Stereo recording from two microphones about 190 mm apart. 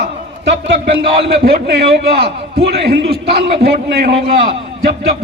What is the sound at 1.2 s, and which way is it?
A man's voice, 60° right (ahead or behind).